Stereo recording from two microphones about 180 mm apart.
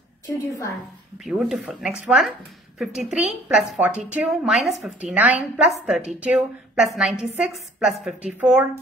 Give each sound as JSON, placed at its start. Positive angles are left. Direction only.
{"t": 0.3, "sound": "a woman's voice", "side_deg": 15}
{"t": 1.2, "sound": "a woman's voice", "side_deg": -5}